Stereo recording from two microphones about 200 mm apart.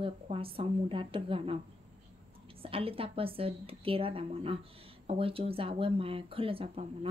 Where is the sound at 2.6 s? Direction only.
30° right (ahead or behind).